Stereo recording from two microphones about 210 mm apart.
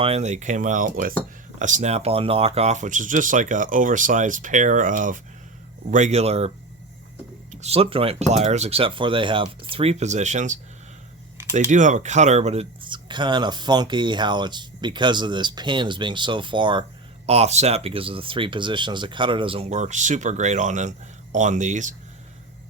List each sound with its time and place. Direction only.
0.0 s speech: 30° right (ahead or behind)
7.5 s speech: 30° right (ahead or behind)
11.7 s speech: 35° right (ahead or behind)